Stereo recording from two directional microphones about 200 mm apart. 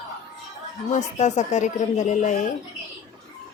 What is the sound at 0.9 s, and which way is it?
Speech, 35° left (ahead or behind).